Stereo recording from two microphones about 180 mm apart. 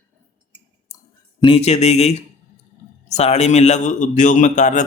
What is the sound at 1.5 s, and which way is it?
Speech, 35° left (ahead or behind).